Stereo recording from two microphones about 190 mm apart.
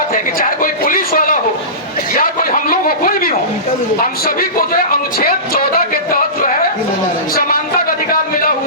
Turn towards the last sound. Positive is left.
turn(degrees=50)  # may be behind; listen again after turning